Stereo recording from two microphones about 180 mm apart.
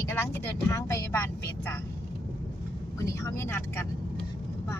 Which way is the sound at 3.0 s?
15° left (ahead or behind).